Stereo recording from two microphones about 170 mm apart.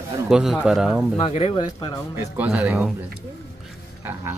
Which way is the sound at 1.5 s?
25° left (ahead or behind).